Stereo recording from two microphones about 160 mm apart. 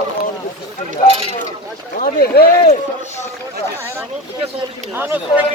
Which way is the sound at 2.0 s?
75° left (ahead or behind).